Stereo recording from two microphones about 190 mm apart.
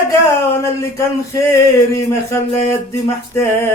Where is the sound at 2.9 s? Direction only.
15° left (ahead or behind).